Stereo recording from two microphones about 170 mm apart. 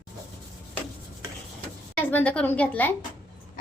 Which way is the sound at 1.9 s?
10° left (ahead or behind).